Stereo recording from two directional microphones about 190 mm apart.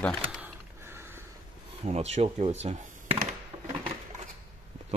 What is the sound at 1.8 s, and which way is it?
Speech, 35° right (ahead or behind).